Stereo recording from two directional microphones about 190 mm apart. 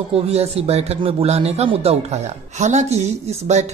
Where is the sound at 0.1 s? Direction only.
35° right (ahead or behind).